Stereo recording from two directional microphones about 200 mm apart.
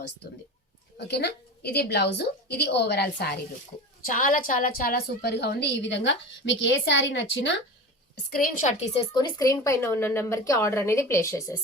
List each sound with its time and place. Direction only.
0.9 s a woman's voice: 55° left (ahead or behind)
4.0 s a woman's voice: 40° left (ahead or behind); by 7.5 s 65° left (ahead or behind)
8.1 s a woman's voice: 45° left (ahead or behind); by 11.5 s 15° left (ahead or behind)